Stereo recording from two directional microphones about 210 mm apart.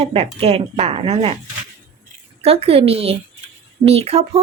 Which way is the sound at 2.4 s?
30° right (ahead or behind).